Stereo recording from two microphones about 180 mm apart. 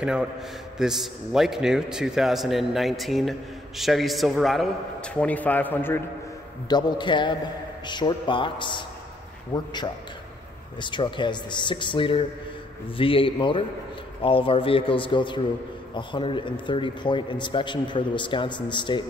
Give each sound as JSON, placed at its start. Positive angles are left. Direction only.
{"t": 0.0, "sound": "a man's voice", "side_deg": -5}
{"t": 6.7, "sound": "a man's voice", "side_deg": 25}
{"t": 10.8, "sound": "a man's voice", "side_deg": 25}